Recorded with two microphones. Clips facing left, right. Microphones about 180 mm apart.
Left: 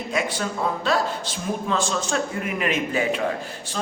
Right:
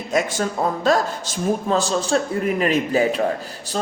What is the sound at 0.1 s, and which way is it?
A woman's voice, 45° right (ahead or behind).